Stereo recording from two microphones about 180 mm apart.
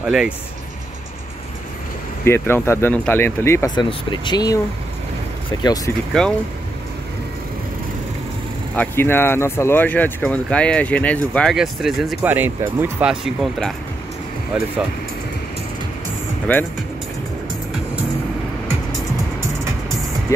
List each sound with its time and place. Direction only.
0.0 s speech: 5° right (ahead or behind)
2.2 s speech: 15° left (ahead or behind)
6.2 s speech: 5° left (ahead or behind)
8.7 s speech: 10° left (ahead or behind); by 14.7 s 5° right (ahead or behind)
16.5 s speech: 10° left (ahead or behind)
20.3 s speech: 15° left (ahead or behind)